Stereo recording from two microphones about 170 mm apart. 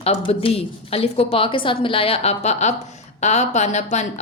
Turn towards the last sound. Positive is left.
turn(degrees=40)  # may be behind; listen again after turning